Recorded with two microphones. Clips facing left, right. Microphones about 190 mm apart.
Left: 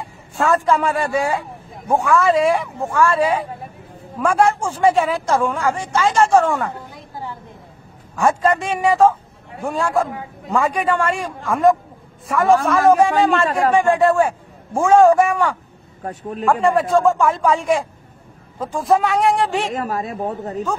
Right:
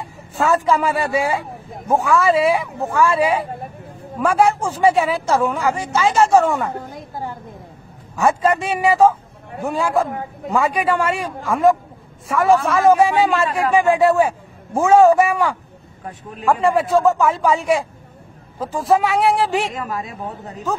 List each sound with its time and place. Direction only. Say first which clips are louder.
0.4 s a man's voice: even; 5° right (ahead or behind)
6.9 s a woman's voice: right 3 dB; 45° right (ahead or behind)
8.2 s a woman's voice: even; 10° right (ahead or behind)
16.0 s speech: left 6 dB; 40° left (ahead or behind)
16.4 s a man's voice: even; centre (ahead or behind)
19.7 s a woman's voice: left 4 dB; 45° left (ahead or behind)